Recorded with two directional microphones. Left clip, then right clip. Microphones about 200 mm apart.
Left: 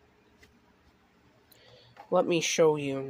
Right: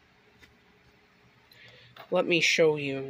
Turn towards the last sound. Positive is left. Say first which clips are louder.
# even
turn(degrees=5)  # may be behind; listen again after turning